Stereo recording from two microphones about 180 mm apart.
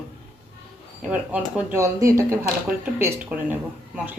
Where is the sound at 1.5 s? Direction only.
15° right (ahead or behind).